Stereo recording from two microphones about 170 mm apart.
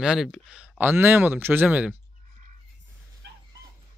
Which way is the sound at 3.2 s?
85° right.